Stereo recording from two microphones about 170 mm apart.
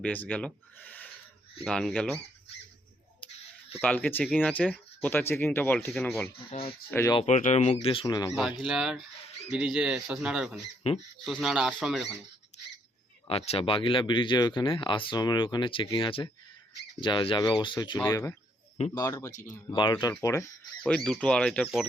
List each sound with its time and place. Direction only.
0.0 s speech: 10° left (ahead or behind)
3.8 s speech: 10° left (ahead or behind)
6.3 s speech: 35° left (ahead or behind)
7.3 s speech: 45° left (ahead or behind)
8.0 s speech: 20° left (ahead or behind)
8.6 s speech: 5° right (ahead or behind)
13.2 s speech: 35° left (ahead or behind)
17.9 s speech: 20° left (ahead or behind)
19.3 s speech: 50° left (ahead or behind)
19.7 s speech: 25° left (ahead or behind)
20.8 s speech: 5° left (ahead or behind)